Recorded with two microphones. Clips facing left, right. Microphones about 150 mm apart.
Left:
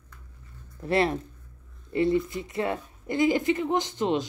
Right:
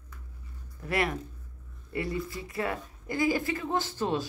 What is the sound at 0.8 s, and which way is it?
Speech, 30° left (ahead or behind).